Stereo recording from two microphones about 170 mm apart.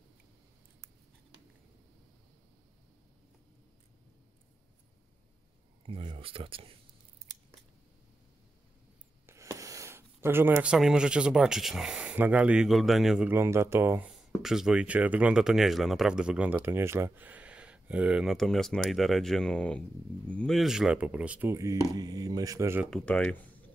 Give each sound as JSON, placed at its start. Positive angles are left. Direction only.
{"t": 5.9, "sound": "speech", "side_deg": -30}
{"t": 9.2, "sound": "speech", "side_deg": -15}
{"t": 22.8, "sound": "speech", "side_deg": 5}